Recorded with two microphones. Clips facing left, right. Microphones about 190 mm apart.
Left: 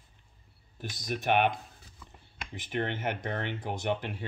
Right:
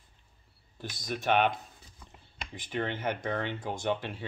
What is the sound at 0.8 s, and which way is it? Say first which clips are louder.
Speech: left 1 dB; 15° left (ahead or behind).